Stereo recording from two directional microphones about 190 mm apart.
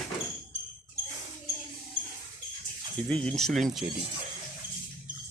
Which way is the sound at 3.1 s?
5° left (ahead or behind).